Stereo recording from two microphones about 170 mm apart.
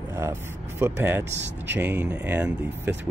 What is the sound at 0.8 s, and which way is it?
Speech, 10° right (ahead or behind).